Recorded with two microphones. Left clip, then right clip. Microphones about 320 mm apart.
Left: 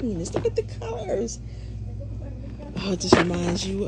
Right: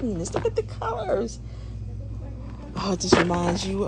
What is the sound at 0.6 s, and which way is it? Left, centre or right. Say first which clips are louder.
Speech: right 2 dB; right.